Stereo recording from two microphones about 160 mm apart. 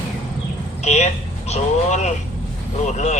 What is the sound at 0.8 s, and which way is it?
Speech, 45° left (ahead or behind).